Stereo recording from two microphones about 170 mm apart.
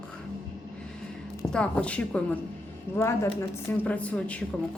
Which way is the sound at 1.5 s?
5° left (ahead or behind).